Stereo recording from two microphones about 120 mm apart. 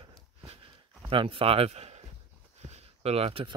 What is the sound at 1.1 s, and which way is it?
Speech, 45° right (ahead or behind).